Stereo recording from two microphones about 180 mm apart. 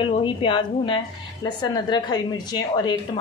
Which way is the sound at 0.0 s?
25° left (ahead or behind).